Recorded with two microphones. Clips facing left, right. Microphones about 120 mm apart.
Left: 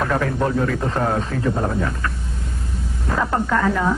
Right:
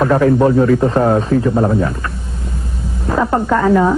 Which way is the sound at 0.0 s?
25° right (ahead or behind).